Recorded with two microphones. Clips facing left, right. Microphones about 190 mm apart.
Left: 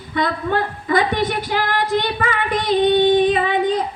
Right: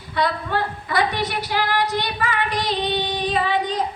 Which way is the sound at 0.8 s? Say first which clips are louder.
Left 6 dB; 50° left (ahead or behind).